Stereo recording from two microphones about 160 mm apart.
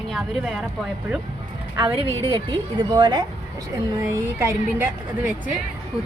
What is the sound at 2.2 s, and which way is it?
A woman's voice, 30° right (ahead or behind).